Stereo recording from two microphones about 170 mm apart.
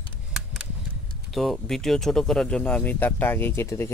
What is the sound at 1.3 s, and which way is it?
Speech, centre (ahead or behind).